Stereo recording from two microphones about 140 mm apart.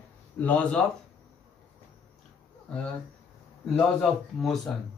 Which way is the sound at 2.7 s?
5° left (ahead or behind).